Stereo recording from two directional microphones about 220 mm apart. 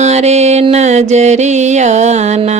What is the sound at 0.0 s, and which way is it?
Music, 30° right (ahead or behind).